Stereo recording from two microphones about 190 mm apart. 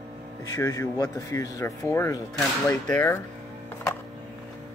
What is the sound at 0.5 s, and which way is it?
Speech, 15° left (ahead or behind).